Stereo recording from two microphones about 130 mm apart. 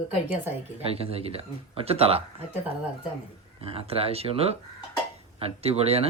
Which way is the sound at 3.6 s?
50° right (ahead or behind).